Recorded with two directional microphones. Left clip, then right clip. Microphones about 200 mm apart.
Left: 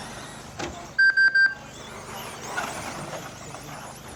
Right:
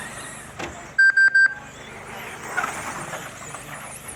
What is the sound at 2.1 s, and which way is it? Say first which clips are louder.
Vehicle: right 2 dB; 50° left (ahead or behind).